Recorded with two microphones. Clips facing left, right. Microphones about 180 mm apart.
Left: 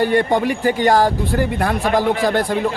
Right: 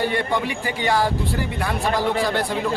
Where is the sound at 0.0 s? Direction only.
45° left (ahead or behind).